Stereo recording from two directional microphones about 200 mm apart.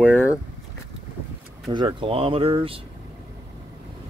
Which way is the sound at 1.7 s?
20° right (ahead or behind).